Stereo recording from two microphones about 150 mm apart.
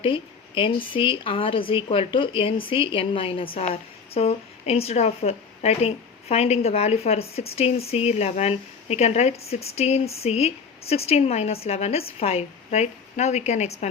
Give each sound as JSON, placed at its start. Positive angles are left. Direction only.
{"t": 0.0, "sound": "a woman's voice", "side_deg": 35}